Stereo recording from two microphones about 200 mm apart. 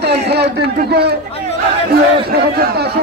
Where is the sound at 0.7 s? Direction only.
55° right (ahead or behind).